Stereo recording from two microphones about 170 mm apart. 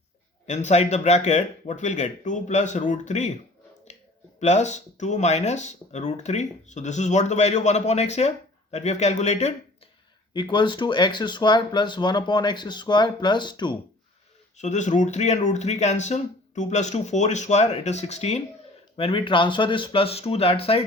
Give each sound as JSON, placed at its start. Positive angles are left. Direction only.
{"t": 0.4, "sound": "speech", "side_deg": 45}
{"t": 4.4, "sound": "speech", "side_deg": 40}
{"t": 10.3, "sound": "speech", "side_deg": 30}
{"t": 14.6, "sound": "speech", "side_deg": 45}